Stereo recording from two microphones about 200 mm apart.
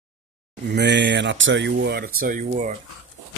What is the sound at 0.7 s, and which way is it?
Speech, 60° right (ahead or behind).